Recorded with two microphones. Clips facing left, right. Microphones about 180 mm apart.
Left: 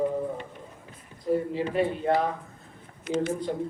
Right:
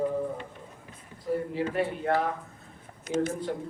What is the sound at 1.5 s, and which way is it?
Speech, 20° left (ahead or behind).